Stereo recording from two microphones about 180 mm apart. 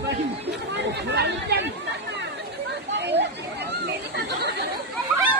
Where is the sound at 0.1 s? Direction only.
70° right (ahead or behind).